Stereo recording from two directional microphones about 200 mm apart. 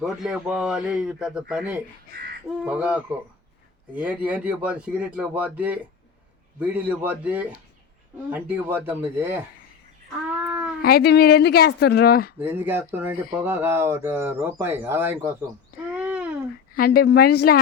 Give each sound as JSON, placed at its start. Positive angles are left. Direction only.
{"t": 0.0, "sound": "a man's voice", "side_deg": 0}
{"t": 10.4, "sound": "cat", "side_deg": -5}
{"t": 10.8, "sound": "a woman's voice", "side_deg": 50}
{"t": 12.4, "sound": "speech", "side_deg": -10}
{"t": 16.0, "sound": "a sound", "side_deg": -5}
{"t": 16.7, "sound": "a woman's voice", "side_deg": 50}